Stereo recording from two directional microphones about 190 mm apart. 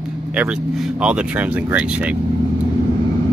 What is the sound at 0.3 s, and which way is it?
Speech, 5° right (ahead or behind).